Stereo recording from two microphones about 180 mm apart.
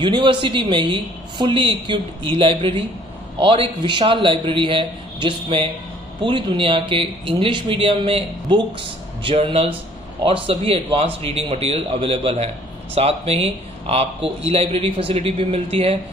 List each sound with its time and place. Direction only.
0.0 s a man's voice: 25° right (ahead or behind)